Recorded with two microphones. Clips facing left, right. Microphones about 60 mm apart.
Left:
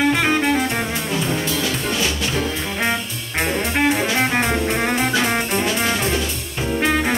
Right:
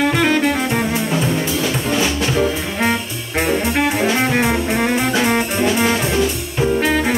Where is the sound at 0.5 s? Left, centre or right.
Centre.